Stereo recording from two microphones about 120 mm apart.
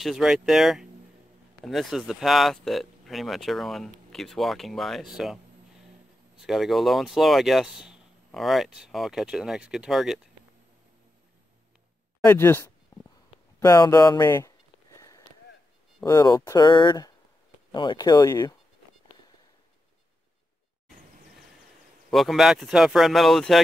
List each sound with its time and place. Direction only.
0.0 s speech: 5° right (ahead or behind)
6.4 s speech: centre (ahead or behind)
12.3 s speech: 20° left (ahead or behind)
13.6 s a sound: 25° left (ahead or behind)
16.0 s speech: 30° left (ahead or behind)
22.1 s speech: centre (ahead or behind)